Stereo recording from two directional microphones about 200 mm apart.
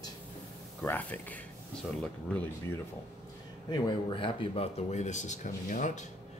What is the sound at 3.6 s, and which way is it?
Speech, 25° left (ahead or behind).